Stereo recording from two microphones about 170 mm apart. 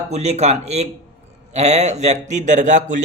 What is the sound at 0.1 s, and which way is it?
A man's voice, 40° right (ahead or behind).